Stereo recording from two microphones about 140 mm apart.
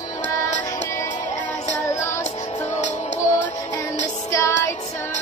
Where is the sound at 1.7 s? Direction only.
60° left (ahead or behind).